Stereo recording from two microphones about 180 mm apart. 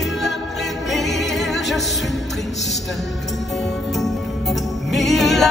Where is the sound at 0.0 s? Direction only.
Centre (ahead or behind).